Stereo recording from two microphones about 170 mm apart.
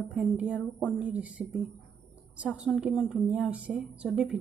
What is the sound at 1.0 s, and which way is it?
Stir, 5° right (ahead or behind).